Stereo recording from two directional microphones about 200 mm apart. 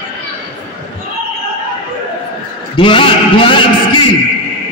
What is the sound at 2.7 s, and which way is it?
Speech, 25° left (ahead or behind).